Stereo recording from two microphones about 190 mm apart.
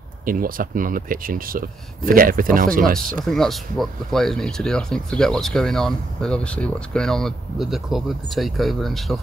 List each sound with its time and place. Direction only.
0.2 s speech: 45° right (ahead or behind)
3.2 s speech: centre (ahead or behind)